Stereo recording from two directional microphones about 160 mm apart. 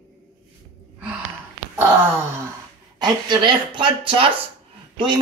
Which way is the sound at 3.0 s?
30° right (ahead or behind).